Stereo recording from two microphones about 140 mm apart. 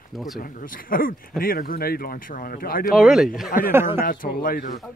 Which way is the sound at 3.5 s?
80° left.